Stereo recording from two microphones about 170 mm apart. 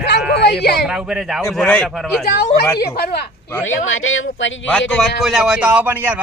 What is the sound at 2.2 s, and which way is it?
Speech, 65° left (ahead or behind).